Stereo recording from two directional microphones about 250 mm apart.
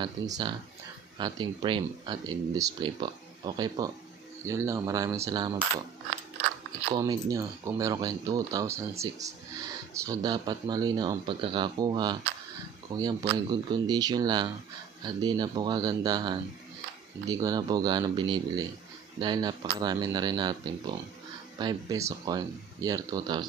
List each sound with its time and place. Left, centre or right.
0.0 s speech: centre
6.9 s speech: centre